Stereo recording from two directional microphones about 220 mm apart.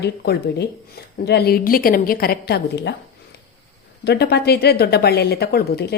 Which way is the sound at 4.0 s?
45° left (ahead or behind).